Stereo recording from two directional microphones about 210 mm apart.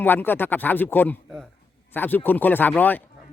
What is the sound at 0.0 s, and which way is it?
Speech, 10° left (ahead or behind).